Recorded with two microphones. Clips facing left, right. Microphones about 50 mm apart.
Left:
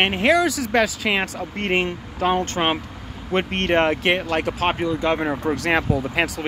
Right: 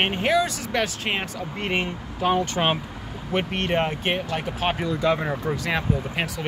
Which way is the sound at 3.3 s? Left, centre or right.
Left.